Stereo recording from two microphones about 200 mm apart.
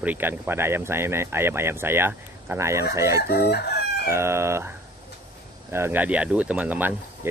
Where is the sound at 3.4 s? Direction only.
55° left (ahead or behind).